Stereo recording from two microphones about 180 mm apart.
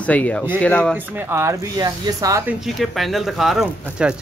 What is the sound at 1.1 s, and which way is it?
Speech, 10° right (ahead or behind).